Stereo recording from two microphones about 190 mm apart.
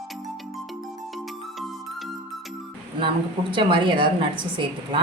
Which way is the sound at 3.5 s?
25° right (ahead or behind).